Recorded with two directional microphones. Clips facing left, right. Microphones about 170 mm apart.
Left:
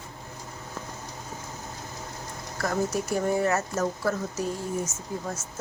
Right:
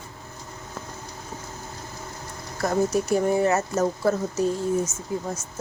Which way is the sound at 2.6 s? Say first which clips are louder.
Right 5 dB; 25° right (ahead or behind).